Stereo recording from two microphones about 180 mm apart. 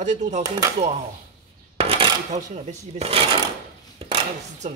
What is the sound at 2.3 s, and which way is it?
Speech, 35° right (ahead or behind).